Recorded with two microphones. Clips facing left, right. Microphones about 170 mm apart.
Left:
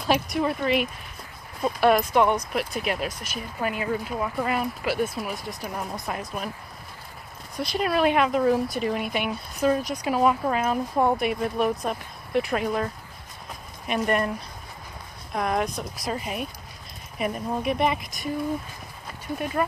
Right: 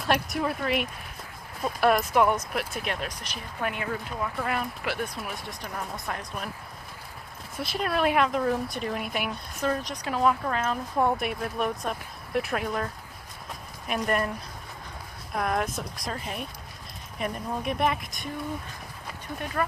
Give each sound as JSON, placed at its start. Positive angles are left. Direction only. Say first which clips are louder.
{"t": 0.0, "sound": "speech", "louder": "left 3 dB", "side_deg": 0}
{"t": 7.5, "sound": "speech", "louder": "left 4 dB", "side_deg": 0}
{"t": 15.3, "sound": "speech", "louder": "left 2 dB", "side_deg": 0}